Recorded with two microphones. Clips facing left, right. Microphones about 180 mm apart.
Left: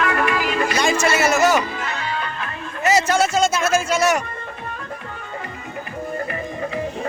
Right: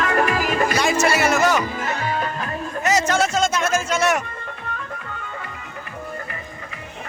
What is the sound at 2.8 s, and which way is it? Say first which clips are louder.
Music: left 2 dB; 10° left (ahead or behind).